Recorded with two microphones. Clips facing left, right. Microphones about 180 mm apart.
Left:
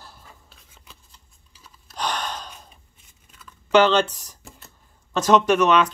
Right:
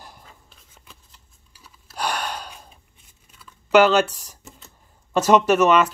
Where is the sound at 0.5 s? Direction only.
Centre (ahead or behind).